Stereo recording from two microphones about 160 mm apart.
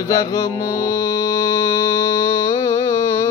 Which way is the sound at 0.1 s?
20° left (ahead or behind).